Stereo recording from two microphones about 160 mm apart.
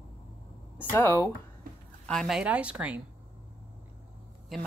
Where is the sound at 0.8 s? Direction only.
15° left (ahead or behind).